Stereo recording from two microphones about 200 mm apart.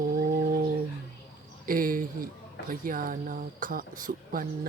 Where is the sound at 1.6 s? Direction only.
45° right (ahead or behind).